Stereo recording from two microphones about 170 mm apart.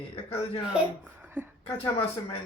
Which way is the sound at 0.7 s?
10° right (ahead or behind).